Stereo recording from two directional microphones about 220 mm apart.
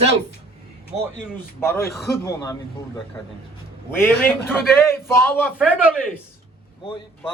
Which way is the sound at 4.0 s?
10° left (ahead or behind).